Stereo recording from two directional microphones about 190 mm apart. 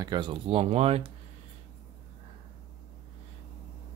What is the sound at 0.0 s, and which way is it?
Speech, 25° right (ahead or behind).